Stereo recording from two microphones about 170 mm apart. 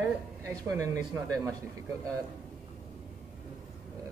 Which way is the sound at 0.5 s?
15° right (ahead or behind).